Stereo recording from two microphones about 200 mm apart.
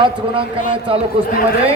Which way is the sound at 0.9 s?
30° right (ahead or behind).